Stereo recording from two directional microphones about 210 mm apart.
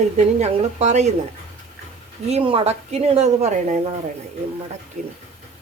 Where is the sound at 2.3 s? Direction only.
25° right (ahead or behind).